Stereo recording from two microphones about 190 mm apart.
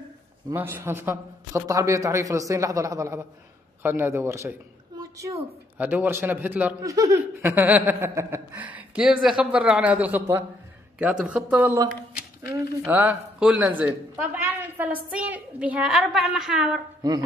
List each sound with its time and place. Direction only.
0.5 s a man's voice: 10° right (ahead or behind)
17.0 s speech: 20° right (ahead or behind)